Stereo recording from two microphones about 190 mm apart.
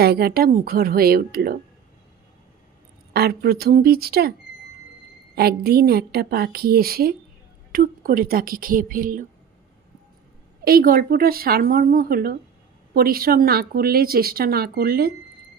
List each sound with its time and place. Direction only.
0.0 s speech: 55° right (ahead or behind)
3.1 s speech: 55° right (ahead or behind)
10.6 s speech: 50° right (ahead or behind)